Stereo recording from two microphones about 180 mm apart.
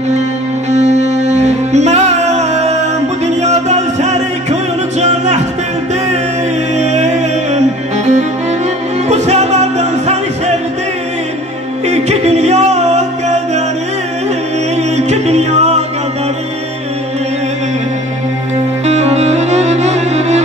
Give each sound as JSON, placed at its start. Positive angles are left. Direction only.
{"t": 0.7, "sound": "music", "side_deg": -40}
{"t": 6.7, "sound": "music", "side_deg": -40}
{"t": 11.8, "sound": "music", "side_deg": -35}
{"t": 14.8, "sound": "music", "side_deg": -40}
{"t": 18.9, "sound": "music", "side_deg": -40}